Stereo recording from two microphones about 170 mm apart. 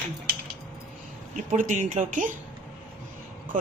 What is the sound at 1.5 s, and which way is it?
Speech, 50° right (ahead or behind).